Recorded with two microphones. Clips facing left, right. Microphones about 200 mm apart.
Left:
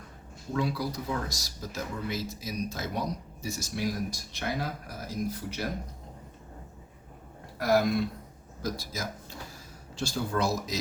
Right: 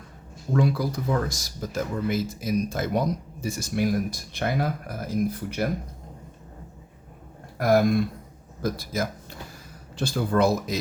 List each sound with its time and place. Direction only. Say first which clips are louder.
0.5 s speech: right 6 dB; 50° right (ahead or behind)
7.6 s speech: right 5 dB; 50° right (ahead or behind)